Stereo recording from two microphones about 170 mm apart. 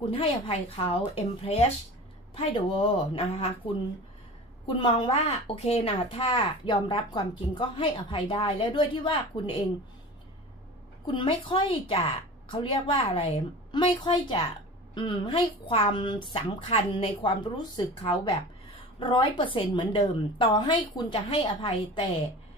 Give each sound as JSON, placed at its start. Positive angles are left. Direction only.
{"t": 0.1, "sound": "a woman's voice", "side_deg": 35}
{"t": 4.6, "sound": "a woman's voice", "side_deg": 30}
{"t": 11.1, "sound": "a woman's voice", "side_deg": 30}